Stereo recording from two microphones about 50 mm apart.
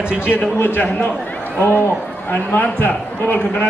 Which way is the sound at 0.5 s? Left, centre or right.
Left.